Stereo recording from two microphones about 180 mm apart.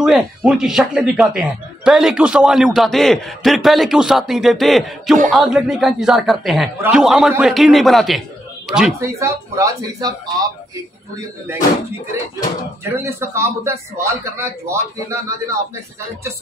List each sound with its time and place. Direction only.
0.0 s speech: 5° right (ahead or behind)
9.0 s speech: 15° right (ahead or behind)
12.8 s a man's voice: 15° right (ahead or behind)